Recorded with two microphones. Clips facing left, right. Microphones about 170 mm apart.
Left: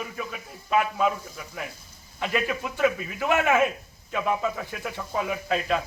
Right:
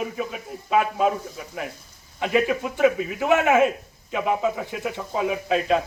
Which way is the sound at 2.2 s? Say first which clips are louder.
Right 6 dB; 20° right (ahead or behind).